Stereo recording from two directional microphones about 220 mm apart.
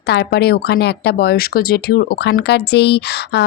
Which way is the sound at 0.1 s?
45° left (ahead or behind).